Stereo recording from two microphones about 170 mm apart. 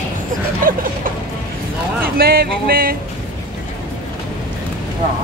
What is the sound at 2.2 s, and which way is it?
Music, 60° right (ahead or behind).